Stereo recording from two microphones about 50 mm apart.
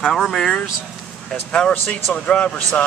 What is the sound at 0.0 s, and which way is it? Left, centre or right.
Speech, centre.